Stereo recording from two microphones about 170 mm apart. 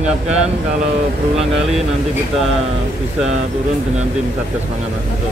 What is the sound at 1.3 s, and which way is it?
Speech, centre (ahead or behind).